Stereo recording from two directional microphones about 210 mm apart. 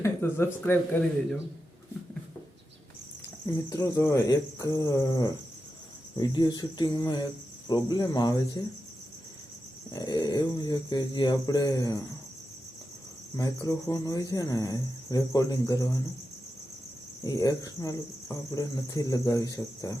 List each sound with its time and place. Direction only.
0.0 s speech: 10° left (ahead or behind)
3.4 s speech: 15° left (ahead or behind)
9.9 s speech: 20° left (ahead or behind)
13.3 s speech: 15° left (ahead or behind)
17.2 s speech: 15° left (ahead or behind)